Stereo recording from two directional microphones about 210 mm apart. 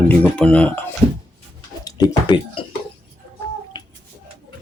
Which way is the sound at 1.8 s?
20° left (ahead or behind).